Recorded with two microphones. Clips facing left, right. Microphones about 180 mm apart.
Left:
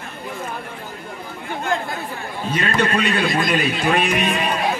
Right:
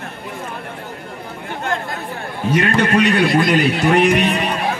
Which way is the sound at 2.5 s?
65° right (ahead or behind).